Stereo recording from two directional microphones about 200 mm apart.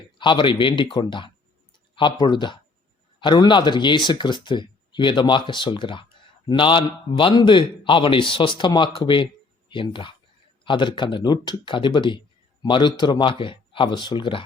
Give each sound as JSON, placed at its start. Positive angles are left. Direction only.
{"t": 0.2, "sound": "a man's voice", "side_deg": 25}